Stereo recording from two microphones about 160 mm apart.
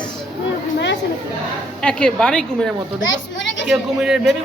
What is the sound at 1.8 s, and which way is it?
Speech, 5° left (ahead or behind).